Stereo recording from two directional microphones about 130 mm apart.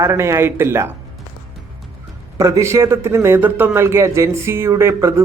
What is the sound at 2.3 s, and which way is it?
A man's voice, 25° right (ahead or behind).